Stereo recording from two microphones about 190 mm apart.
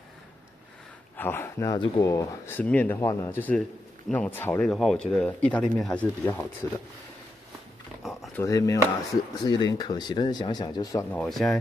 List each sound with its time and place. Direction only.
1.1 s speech: 10° left (ahead or behind)
8.0 s a sound: centre (ahead or behind)
8.4 s speech: 15° left (ahead or behind)
11.1 s speech: 5° left (ahead or behind)